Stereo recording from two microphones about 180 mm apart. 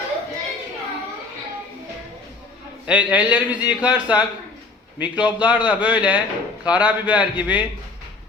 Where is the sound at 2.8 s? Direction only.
5° right (ahead or behind).